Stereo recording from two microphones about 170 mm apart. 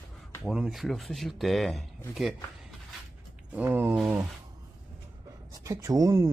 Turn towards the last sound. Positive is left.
turn(degrees=-15)  # may be behind; listen again after turning